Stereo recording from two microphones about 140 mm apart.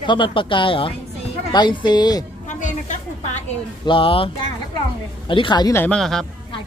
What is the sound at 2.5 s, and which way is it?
Music, 60° left (ahead or behind).